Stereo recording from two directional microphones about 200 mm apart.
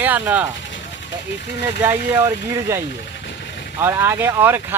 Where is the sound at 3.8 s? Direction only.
10° right (ahead or behind).